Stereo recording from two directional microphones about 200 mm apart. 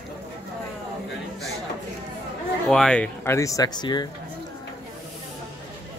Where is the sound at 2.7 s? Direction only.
5° left (ahead or behind); by 4.1 s 20° left (ahead or behind).